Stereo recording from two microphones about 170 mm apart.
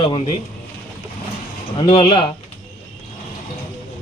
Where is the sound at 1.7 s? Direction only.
30° left (ahead or behind).